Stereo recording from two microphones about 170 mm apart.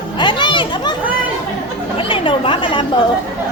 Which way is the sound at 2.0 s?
30° left (ahead or behind).